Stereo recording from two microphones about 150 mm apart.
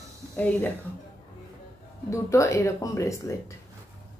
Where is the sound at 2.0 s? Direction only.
20° left (ahead or behind).